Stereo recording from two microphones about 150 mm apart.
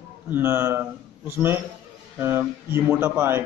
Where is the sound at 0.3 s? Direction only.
15° right (ahead or behind).